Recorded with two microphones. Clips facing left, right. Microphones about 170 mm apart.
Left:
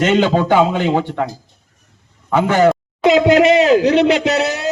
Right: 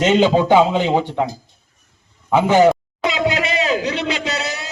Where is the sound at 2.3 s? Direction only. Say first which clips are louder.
Even; 15° right (ahead or behind).